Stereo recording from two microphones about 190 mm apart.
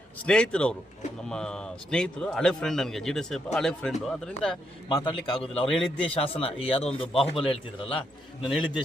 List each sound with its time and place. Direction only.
0.3 s speech: 5° left (ahead or behind)
4.9 s a man's voice: 20° left (ahead or behind)
5.5 s speech: 5° left (ahead or behind)
6.2 s a man's voice: 30° left (ahead or behind)